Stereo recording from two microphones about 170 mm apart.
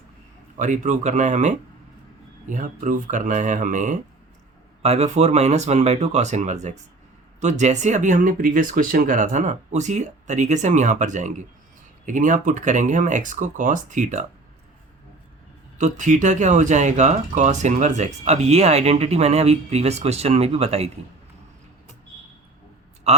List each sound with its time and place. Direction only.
0.5 s speech: 45° right (ahead or behind)
15.8 s speech: 45° right (ahead or behind)
23.1 s a man's voice: 40° right (ahead or behind)